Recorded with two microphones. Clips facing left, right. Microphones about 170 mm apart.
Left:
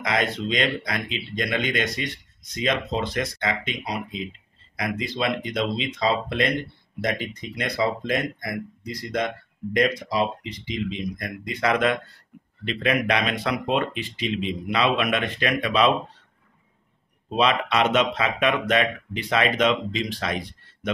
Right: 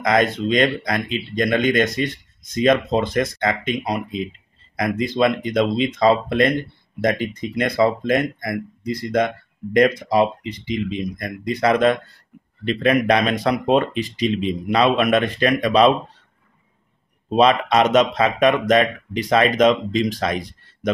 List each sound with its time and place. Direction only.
0.0 s speech: 45° right (ahead or behind)
10.9 s a man's voice: 40° right (ahead or behind)
17.4 s a man's voice: 40° right (ahead or behind)